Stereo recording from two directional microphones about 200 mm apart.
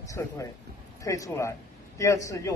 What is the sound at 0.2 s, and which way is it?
Speech, 15° left (ahead or behind).